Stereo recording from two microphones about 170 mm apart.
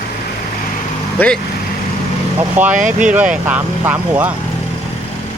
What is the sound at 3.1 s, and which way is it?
Speech, 10° right (ahead or behind).